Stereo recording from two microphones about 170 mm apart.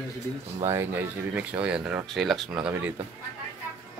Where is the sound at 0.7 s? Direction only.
10° right (ahead or behind).